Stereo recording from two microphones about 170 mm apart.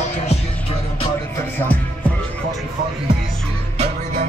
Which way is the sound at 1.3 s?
10° left (ahead or behind).